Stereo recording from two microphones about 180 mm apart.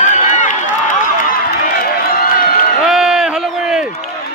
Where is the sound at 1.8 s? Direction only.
55° left (ahead or behind).